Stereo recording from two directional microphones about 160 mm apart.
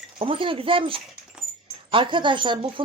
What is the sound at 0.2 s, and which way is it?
Speech, 35° right (ahead or behind).